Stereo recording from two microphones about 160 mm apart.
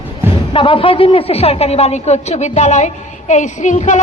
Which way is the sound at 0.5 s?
35° left (ahead or behind).